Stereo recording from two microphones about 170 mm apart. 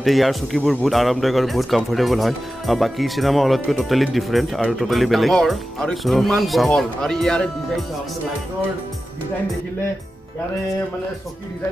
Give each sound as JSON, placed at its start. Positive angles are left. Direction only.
{"t": 0.0, "sound": "speech", "side_deg": 0}